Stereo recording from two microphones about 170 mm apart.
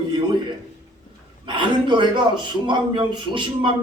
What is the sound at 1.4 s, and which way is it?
A man's voice, 30° right (ahead or behind).